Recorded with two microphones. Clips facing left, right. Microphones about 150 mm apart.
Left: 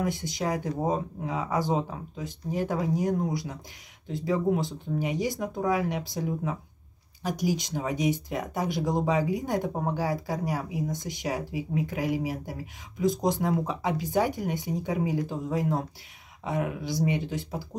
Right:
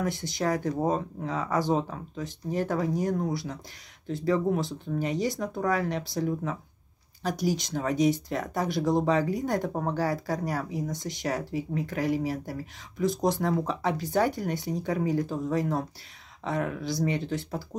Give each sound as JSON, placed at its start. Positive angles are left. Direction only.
{"t": 0.0, "sound": "speech", "side_deg": 15}